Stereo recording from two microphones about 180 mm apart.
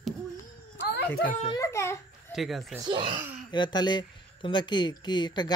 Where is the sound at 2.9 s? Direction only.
30° right (ahead or behind).